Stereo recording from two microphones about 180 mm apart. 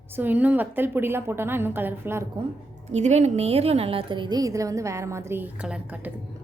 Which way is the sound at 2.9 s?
40° right (ahead or behind).